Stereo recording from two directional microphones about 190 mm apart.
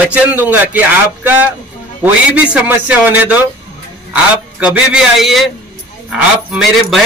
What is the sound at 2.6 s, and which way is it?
Speech, 10° right (ahead or behind).